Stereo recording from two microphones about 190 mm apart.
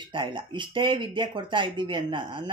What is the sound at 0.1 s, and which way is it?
Speech, 25° right (ahead or behind).